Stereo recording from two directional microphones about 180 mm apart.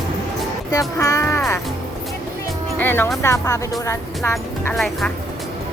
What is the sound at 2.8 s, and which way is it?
Music, 10° left (ahead or behind).